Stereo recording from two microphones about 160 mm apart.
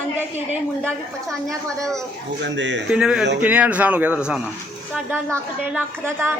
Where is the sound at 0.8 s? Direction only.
Centre (ahead or behind).